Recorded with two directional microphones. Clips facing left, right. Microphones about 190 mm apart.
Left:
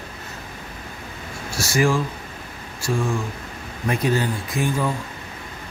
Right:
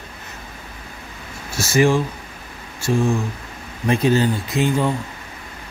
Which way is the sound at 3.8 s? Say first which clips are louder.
Right 5 dB; 25° right (ahead or behind).